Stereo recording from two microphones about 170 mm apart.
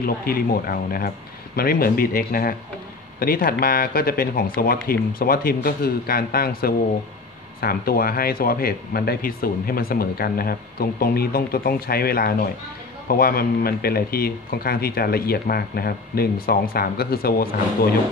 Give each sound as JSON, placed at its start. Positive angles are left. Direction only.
{"t": 0.0, "sound": "speech", "side_deg": 60}